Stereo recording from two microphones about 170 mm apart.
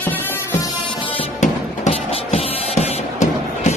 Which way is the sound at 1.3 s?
40° left (ahead or behind).